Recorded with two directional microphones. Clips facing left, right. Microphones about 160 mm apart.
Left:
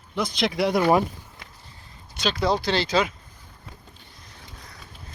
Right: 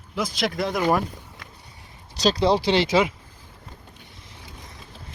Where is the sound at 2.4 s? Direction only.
25° right (ahead or behind).